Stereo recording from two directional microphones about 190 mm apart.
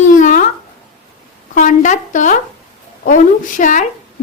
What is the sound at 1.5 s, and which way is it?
A woman's voice, 40° left (ahead or behind).